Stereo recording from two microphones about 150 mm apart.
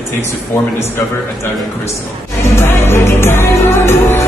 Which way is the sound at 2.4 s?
15° left (ahead or behind).